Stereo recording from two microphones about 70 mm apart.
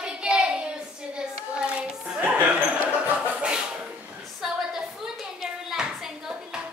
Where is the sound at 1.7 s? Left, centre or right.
Right.